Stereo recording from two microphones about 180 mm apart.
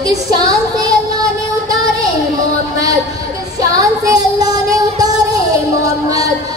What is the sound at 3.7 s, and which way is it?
Child singing, 20° right (ahead or behind).